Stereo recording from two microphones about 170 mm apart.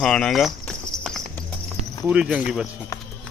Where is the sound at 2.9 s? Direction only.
20° left (ahead or behind).